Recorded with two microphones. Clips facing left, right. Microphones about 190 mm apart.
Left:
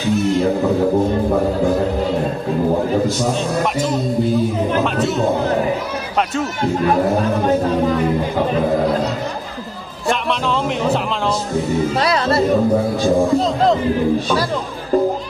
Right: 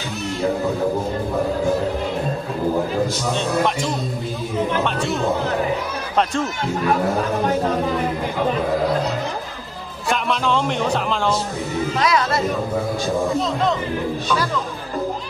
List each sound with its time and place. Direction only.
4.8 s speech: centre (ahead or behind)
10.0 s speech: centre (ahead or behind)
12.0 s speech: 35° left (ahead or behind)
13.4 s speech: 35° left (ahead or behind)